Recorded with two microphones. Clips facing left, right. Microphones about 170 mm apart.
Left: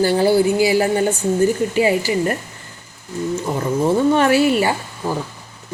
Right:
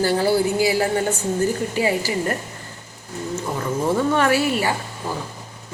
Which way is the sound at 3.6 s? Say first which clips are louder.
Left 4 dB; 25° left (ahead or behind).